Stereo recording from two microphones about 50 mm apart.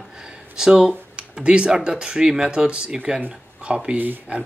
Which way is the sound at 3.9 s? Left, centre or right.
Right.